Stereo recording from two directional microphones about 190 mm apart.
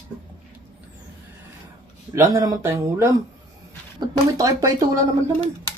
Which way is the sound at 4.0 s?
20° right (ahead or behind).